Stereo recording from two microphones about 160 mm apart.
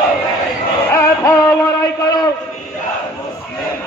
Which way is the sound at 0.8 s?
20° left (ahead or behind).